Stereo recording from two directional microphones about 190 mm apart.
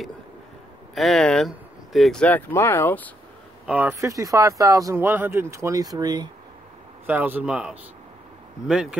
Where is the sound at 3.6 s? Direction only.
10° right (ahead or behind).